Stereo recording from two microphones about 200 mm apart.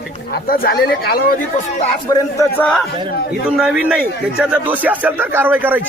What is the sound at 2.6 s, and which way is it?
A man's voice, 5° left (ahead or behind).